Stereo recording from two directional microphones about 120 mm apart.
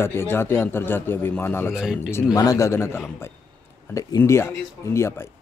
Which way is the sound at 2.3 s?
30° left (ahead or behind).